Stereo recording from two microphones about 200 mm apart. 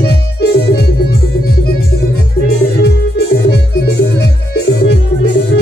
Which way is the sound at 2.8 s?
55° left (ahead or behind).